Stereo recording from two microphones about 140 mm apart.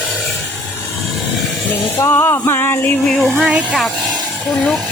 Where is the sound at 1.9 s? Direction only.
20° left (ahead or behind).